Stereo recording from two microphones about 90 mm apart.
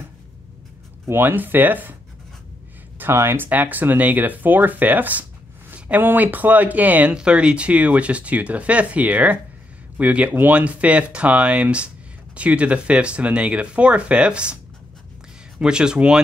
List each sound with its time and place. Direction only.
1.0 s speech: 25° right (ahead or behind)
3.0 s speech: 25° right (ahead or behind); by 14.6 s 10° right (ahead or behind)
15.6 s speech: 10° right (ahead or behind)